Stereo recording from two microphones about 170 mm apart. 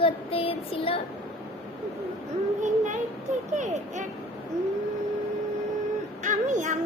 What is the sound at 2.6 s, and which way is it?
Child singing, 45° right (ahead or behind).